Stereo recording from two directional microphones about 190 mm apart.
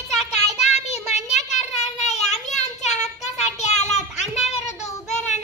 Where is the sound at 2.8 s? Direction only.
35° left (ahead or behind).